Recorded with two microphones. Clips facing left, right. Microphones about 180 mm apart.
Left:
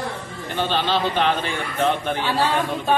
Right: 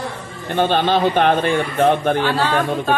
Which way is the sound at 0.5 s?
55° right (ahead or behind).